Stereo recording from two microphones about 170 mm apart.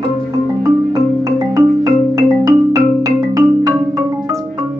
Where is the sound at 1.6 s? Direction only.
20° right (ahead or behind).